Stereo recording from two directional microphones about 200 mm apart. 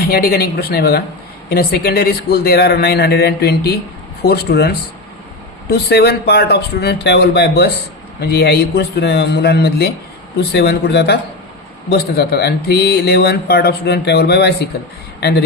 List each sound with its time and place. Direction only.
0.1 s a man's voice: 50° left (ahead or behind)